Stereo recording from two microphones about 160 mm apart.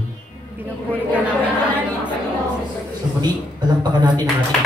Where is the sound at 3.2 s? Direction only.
25° right (ahead or behind).